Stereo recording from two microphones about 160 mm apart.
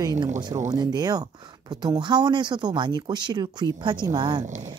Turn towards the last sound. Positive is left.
turn(degrees=-25)  # may be behind; listen again after turning